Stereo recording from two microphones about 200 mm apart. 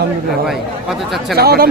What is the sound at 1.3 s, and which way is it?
Speech, 50° right (ahead or behind).